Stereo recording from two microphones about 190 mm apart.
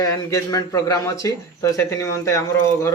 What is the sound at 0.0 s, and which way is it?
Speech, 15° left (ahead or behind).